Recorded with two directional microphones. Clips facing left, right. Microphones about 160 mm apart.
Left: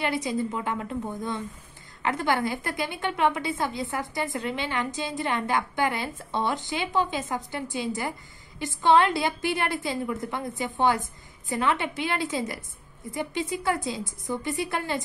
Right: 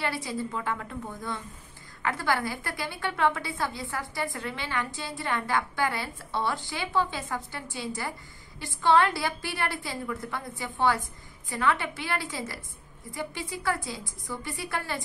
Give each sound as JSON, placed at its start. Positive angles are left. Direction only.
{"t": 0.0, "sound": "a woman's voice", "side_deg": 20}